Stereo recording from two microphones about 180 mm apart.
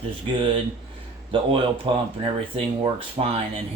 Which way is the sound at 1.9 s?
25° right (ahead or behind).